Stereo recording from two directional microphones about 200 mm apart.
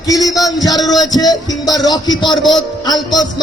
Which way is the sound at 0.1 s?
20° left (ahead or behind).